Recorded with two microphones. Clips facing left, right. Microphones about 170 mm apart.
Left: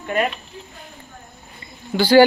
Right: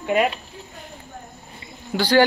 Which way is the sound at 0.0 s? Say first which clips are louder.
Right 2 dB; 10° right (ahead or behind).